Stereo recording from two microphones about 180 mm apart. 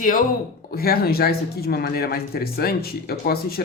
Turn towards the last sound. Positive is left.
turn(degrees=60)  # may be behind; listen again after turning